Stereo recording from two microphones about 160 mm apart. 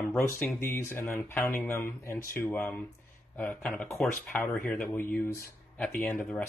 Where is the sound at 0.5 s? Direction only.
15° left (ahead or behind).